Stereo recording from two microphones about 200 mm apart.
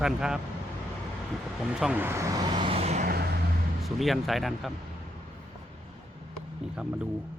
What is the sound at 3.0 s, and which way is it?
Vehicle, 50° right (ahead or behind).